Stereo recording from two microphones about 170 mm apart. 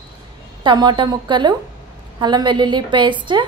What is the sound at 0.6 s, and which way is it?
A woman's voice, 25° right (ahead or behind).